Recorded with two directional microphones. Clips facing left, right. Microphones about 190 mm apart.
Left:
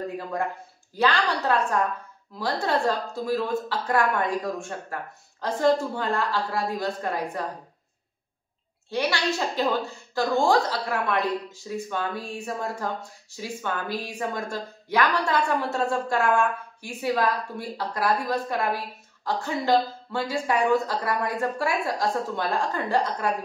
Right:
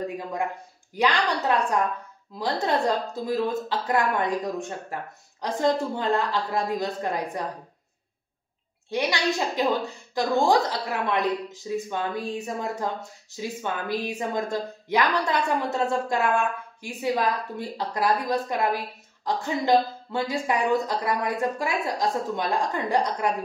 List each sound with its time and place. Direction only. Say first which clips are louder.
0.9 s a woman's voice: even; 15° right (ahead or behind)
8.9 s a woman's voice: right 1 dB; 15° right (ahead or behind)